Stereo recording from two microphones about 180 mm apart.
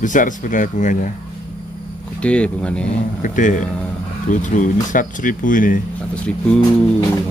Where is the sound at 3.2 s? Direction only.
45° left (ahead or behind).